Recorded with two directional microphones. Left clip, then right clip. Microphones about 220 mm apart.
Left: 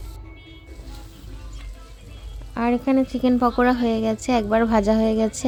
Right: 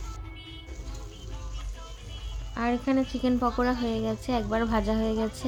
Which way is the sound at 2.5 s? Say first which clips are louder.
Left 6 dB; 30° left (ahead or behind).